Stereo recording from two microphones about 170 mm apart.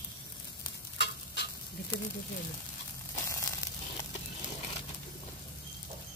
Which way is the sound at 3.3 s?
20° left (ahead or behind).